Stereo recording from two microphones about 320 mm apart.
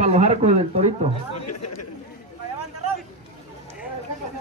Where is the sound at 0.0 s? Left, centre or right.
Centre.